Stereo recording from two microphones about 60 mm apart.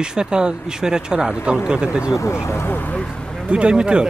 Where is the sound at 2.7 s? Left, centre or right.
Left.